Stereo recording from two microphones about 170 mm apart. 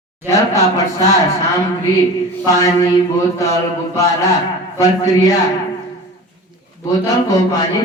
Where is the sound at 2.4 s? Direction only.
20° left (ahead or behind).